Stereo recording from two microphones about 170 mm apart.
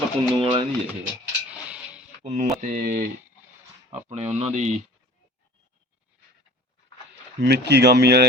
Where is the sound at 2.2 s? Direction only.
45° right (ahead or behind).